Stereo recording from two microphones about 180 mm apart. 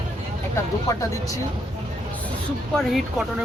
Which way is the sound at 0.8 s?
20° left (ahead or behind).